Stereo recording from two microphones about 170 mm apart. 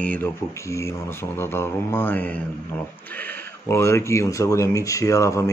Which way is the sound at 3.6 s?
15° left (ahead or behind).